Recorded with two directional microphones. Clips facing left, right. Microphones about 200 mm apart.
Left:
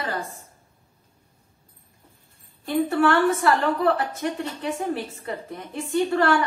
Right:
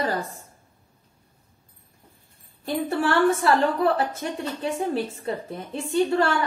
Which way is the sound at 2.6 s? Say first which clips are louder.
Left 4 dB; 30° right (ahead or behind).